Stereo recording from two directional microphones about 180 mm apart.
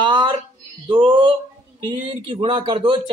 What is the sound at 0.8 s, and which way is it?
A man's voice, 30° right (ahead or behind).